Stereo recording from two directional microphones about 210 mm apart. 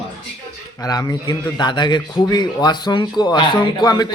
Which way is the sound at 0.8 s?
15° left (ahead or behind).